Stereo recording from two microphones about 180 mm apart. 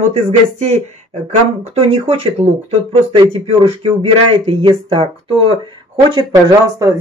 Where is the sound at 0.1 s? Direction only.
40° right (ahead or behind).